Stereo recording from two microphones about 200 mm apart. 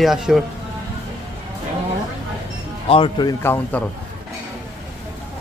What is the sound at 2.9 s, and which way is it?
Speech, 25° left (ahead or behind).